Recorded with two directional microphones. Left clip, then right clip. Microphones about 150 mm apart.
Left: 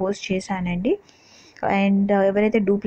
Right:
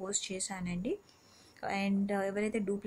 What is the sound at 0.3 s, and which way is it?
A woman's voice, 30° left (ahead or behind).